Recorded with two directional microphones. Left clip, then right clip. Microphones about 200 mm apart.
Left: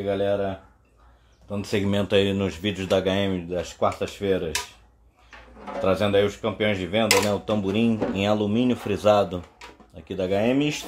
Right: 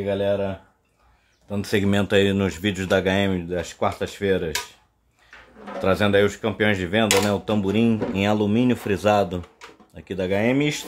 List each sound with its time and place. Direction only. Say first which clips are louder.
0.2 s speech: right 2 dB; 35° right (ahead or behind)
1.5 s speech: right 3 dB; 35° right (ahead or behind)
5.8 s speech: right 2 dB; 35° right (ahead or behind)